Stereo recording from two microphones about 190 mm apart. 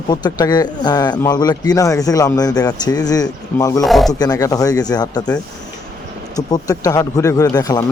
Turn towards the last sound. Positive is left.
turn(degrees=20)  # may be behind; listen again after turning